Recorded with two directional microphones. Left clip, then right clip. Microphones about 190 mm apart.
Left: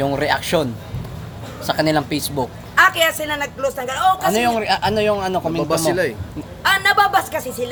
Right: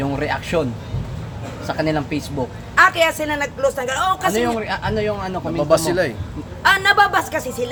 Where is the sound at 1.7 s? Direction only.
55° left (ahead or behind).